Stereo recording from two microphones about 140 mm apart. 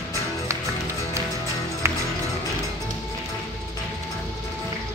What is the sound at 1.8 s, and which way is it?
Music, 20° right (ahead or behind).